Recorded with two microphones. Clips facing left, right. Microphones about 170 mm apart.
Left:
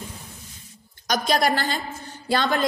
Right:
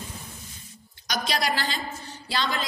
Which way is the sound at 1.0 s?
50° left (ahead or behind).